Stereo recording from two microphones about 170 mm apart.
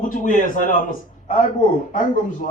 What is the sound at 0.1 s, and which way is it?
A man's voice, 50° left (ahead or behind).